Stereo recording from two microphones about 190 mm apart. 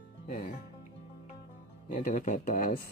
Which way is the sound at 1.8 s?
45° left (ahead or behind).